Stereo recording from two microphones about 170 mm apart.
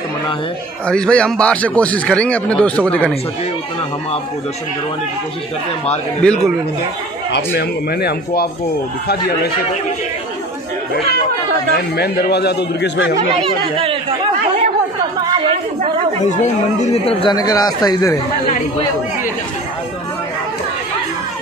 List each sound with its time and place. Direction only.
0.8 s speech: 5° left (ahead or behind)
6.2 s a man's voice: centre (ahead or behind)
7.3 s speech: 75° left (ahead or behind)
12.0 s speech: 70° left (ahead or behind)
13.2 s speech: 35° right (ahead or behind)
16.8 s speech: 35° left (ahead or behind)